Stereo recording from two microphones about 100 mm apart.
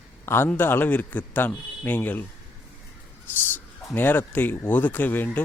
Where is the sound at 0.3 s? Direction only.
25° left (ahead or behind).